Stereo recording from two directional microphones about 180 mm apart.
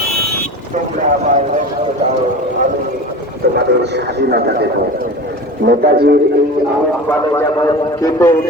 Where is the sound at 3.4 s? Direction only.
65° right (ahead or behind).